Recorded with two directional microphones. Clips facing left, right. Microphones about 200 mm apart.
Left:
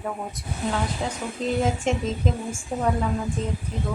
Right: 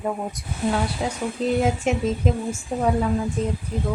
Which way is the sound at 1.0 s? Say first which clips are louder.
Right 3 dB; 10° right (ahead or behind).